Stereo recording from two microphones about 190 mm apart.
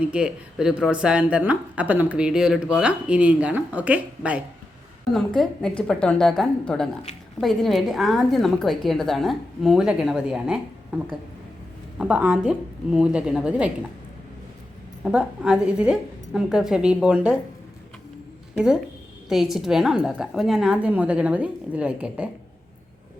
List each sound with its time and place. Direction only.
0.1 s speech: 5° right (ahead or behind)
15.0 s speech: 5° right (ahead or behind)
18.5 s speech: 5° right (ahead or behind)